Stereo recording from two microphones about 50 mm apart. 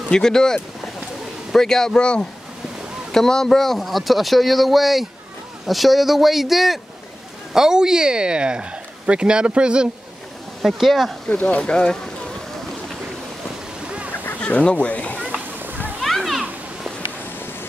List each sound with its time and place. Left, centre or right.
0.1 s speech: centre; by 9.8 s right
10.6 s speech: centre
11.2 s speech: left
14.4 s speech: left
15.6 s a sound: right
16.0 s children playing: centre